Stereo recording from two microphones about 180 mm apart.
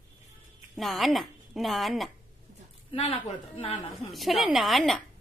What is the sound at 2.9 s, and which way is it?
Speech, 30° left (ahead or behind).